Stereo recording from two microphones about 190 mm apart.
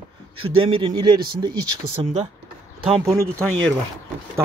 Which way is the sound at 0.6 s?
25° right (ahead or behind).